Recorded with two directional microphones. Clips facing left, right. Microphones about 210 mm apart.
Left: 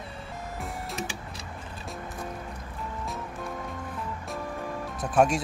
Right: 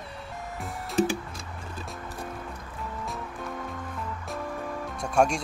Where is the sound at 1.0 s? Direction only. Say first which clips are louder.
Right 14 dB; 30° right (ahead or behind).